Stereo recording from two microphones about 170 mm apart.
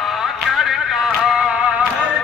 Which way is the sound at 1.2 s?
5° right (ahead or behind).